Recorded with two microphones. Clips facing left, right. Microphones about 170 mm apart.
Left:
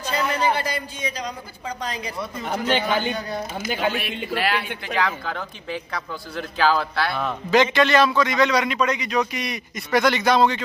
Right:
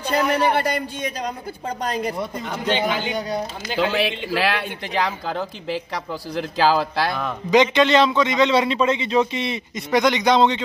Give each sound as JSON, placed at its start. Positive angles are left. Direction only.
{"t": 0.0, "sound": "speech", "side_deg": -60}
{"t": 2.8, "sound": "a man's voice", "side_deg": -15}
{"t": 3.7, "sound": "speech", "side_deg": -90}
{"t": 4.9, "sound": "speech", "side_deg": -30}
{"t": 7.5, "sound": "a man's voice", "side_deg": -20}